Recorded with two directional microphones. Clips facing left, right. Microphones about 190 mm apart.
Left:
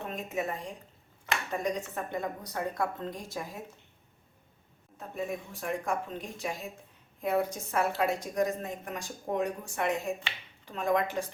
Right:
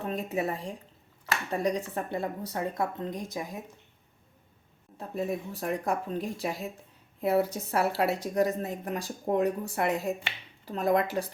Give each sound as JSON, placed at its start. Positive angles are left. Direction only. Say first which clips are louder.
{"t": 0.0, "sound": "a woman's voice", "louder": "right 4 dB", "side_deg": -35}
{"t": 4.9, "sound": "a woman's voice", "louder": "right 4 dB", "side_deg": -35}